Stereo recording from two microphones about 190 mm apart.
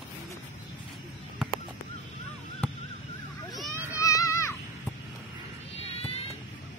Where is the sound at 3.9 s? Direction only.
15° left (ahead or behind).